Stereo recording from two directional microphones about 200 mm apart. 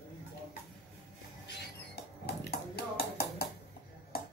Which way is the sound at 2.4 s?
50° left (ahead or behind).